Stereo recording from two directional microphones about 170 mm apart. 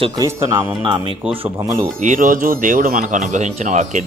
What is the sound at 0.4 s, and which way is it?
Speech, 25° right (ahead or behind).